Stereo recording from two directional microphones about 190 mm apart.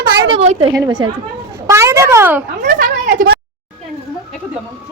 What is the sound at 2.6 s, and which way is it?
Speech, 45° right (ahead or behind).